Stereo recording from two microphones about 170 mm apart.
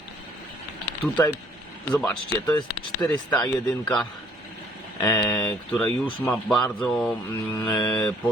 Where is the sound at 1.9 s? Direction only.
10° left (ahead or behind).